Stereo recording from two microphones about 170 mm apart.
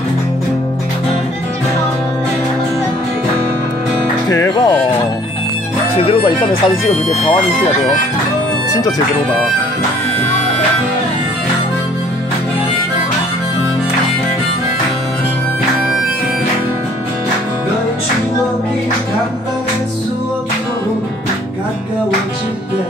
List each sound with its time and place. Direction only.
4.3 s music: 20° left (ahead or behind)
5.9 s speech: 35° left (ahead or behind)